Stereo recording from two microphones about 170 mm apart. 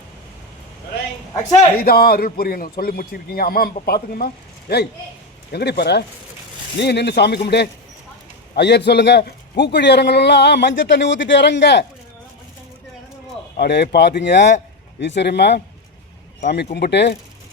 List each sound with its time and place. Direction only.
1.7 s a man's voice: 60° left (ahead or behind)
5.5 s a man's voice: 70° left (ahead or behind); by 11.9 s 90° left
13.6 s a man's voice: 75° left (ahead or behind)